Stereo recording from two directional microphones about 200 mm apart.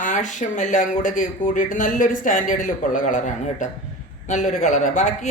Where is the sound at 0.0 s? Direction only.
40° left (ahead or behind).